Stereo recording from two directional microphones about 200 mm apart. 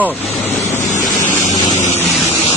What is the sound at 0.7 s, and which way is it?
Vehicle, 40° left (ahead or behind).